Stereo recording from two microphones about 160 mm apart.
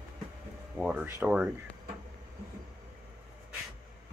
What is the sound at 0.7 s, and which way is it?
Speech, 5° right (ahead or behind).